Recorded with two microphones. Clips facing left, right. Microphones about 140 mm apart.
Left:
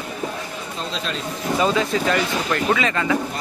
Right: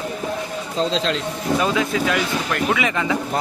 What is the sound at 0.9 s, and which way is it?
Speech, 90° right.